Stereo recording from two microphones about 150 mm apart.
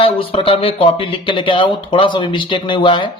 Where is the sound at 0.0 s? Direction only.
35° left (ahead or behind).